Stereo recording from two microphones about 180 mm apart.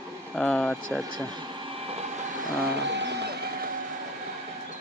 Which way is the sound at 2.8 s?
75° right (ahead or behind).